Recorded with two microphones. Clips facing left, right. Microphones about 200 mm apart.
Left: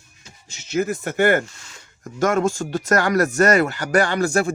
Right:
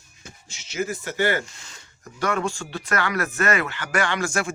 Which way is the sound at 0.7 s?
55° left (ahead or behind).